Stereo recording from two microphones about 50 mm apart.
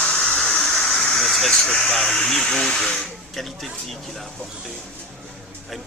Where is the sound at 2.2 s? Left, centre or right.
Centre.